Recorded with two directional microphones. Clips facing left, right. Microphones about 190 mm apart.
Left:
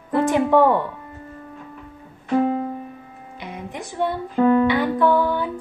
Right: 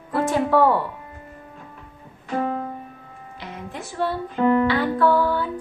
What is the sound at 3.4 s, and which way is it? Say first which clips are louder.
Music: left 2 dB; 15° left (ahead or behind).